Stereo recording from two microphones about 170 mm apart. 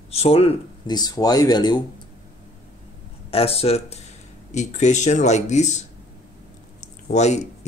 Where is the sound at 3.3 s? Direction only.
35° left (ahead or behind).